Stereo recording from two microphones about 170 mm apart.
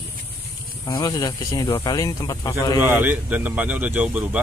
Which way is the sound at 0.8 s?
20° left (ahead or behind).